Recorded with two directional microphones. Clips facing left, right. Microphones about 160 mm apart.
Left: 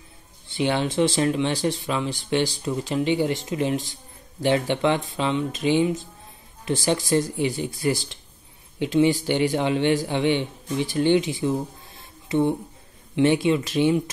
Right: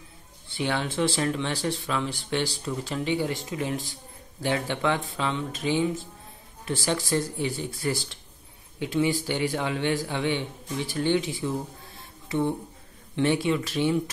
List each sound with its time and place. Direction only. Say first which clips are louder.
0.6 s speech: left 5 dB; 20° left (ahead or behind)